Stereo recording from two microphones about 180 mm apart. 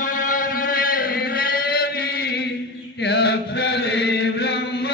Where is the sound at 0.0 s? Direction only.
45° left (ahead or behind).